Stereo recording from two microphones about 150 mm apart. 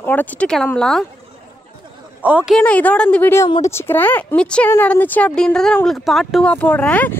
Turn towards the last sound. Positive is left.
turn(degrees=10)  # may be behind; listen again after turning